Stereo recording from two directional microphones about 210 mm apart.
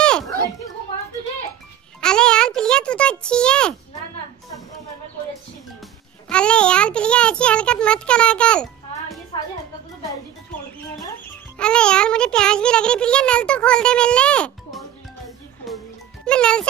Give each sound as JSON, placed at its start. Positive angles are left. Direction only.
{"t": 0.0, "sound": "children playing", "side_deg": 5}
{"t": 2.0, "sound": "a sound", "side_deg": 5}
{"t": 6.2, "sound": "a sound", "side_deg": 5}
{"t": 9.3, "sound": "music", "side_deg": 20}
{"t": 11.5, "sound": "music", "side_deg": 5}
{"t": 16.3, "sound": "music", "side_deg": 5}